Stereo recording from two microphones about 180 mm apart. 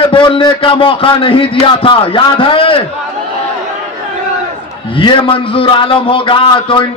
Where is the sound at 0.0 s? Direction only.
30° left (ahead or behind).